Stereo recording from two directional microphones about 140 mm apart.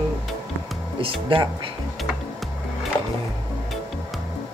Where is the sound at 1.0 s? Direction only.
40° right (ahead or behind).